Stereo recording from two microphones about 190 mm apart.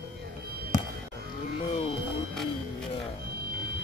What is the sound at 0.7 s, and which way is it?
Music, 40° left (ahead or behind).